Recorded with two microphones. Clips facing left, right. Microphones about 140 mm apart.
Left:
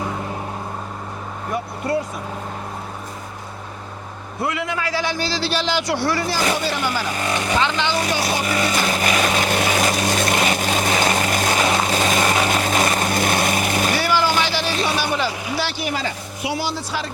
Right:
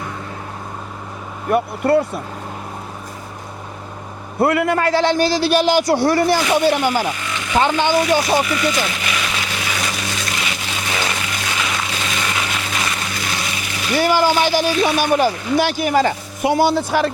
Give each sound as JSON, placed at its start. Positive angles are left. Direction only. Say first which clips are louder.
{"t": 1.5, "sound": "speech", "louder": "right 8 dB", "side_deg": -60}
{"t": 4.4, "sound": "a man's voice", "louder": "right 8 dB", "side_deg": -55}
{"t": 7.2, "sound": "speech", "louder": "left 5 dB", "side_deg": 40}
{"t": 7.6, "sound": "a man's voice", "louder": "right 4 dB", "side_deg": -45}
{"t": 8.4, "sound": "vehicle", "louder": "even", "side_deg": 40}
{"t": 14.0, "sound": "vehicle", "louder": "right 9 dB", "side_deg": -45}
{"t": 14.8, "sound": "a man's voice", "louder": "right 5 dB", "side_deg": -50}